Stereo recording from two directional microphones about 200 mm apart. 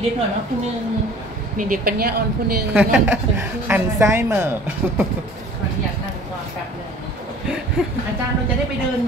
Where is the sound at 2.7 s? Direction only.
5° right (ahead or behind).